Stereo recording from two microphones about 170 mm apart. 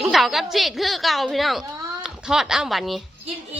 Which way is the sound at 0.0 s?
Centre (ahead or behind).